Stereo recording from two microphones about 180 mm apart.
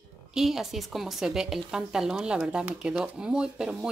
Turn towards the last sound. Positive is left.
turn(degrees=-5)  # may be behind; listen again after turning